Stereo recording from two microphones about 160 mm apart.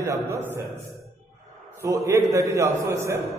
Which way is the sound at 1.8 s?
20° right (ahead or behind).